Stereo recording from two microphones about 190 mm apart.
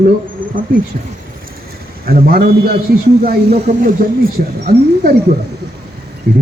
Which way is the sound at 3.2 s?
50° right (ahead or behind).